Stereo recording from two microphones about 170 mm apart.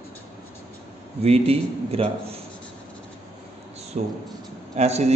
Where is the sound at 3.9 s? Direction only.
45° right (ahead or behind).